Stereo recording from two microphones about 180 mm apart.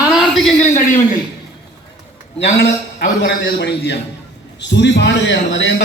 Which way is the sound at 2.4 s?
70° left (ahead or behind).